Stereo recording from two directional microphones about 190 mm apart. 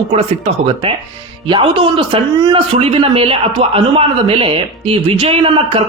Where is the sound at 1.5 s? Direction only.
25° right (ahead or behind).